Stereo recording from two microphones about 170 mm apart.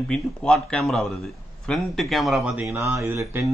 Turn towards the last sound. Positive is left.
turn(degrees=-15)  # may be behind; listen again after turning